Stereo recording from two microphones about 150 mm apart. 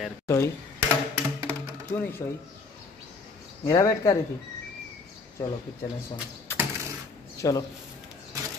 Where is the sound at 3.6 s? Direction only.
20° left (ahead or behind).